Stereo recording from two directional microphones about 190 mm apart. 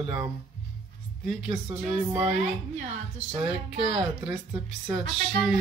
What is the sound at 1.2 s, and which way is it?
Speech, centre (ahead or behind).